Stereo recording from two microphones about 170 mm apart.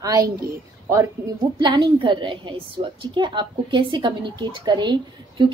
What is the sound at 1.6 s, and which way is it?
A woman's voice, 30° right (ahead or behind).